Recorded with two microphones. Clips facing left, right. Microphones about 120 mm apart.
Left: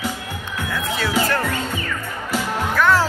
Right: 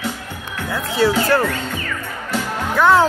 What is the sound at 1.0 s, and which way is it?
Music, 30° right (ahead or behind).